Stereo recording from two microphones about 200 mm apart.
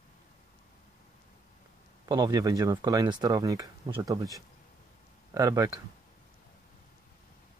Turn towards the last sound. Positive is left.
turn(degrees=-20)  # may be behind; listen again after turning